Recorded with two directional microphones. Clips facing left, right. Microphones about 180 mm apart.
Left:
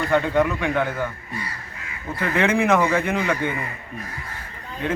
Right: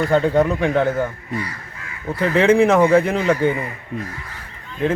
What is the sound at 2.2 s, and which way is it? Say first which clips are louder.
Speech: right 6 dB; 30° right (ahead or behind).